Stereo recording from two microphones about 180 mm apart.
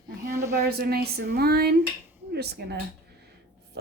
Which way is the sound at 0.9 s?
60° right (ahead or behind).